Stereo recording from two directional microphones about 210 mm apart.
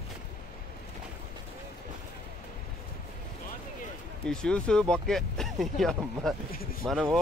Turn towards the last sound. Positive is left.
turn(degrees=0)  # may be behind; listen again after turning